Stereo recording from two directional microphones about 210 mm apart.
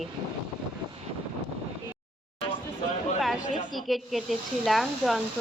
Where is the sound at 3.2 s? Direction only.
Centre (ahead or behind).